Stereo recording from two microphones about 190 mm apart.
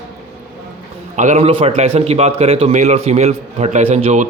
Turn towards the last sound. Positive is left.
turn(degrees=-35)  # may be behind; listen again after turning